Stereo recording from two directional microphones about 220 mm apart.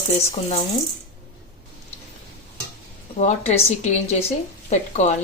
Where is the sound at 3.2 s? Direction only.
30° left (ahead or behind).